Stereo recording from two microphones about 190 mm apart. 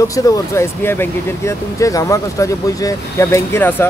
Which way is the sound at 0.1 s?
15° left (ahead or behind).